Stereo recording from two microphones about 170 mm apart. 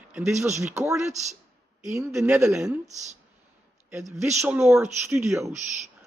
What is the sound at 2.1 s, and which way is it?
Speech, 10° right (ahead or behind).